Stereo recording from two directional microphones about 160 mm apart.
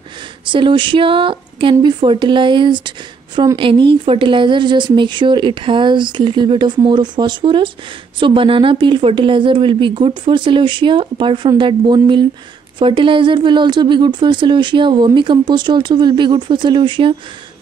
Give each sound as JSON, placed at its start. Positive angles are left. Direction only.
{"t": 0.5, "sound": "speech", "side_deg": -30}